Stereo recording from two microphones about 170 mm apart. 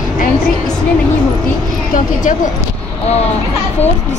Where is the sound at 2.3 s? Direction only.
50° left (ahead or behind).